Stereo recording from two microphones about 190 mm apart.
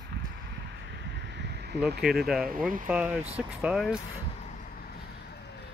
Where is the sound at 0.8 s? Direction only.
65° right (ahead or behind).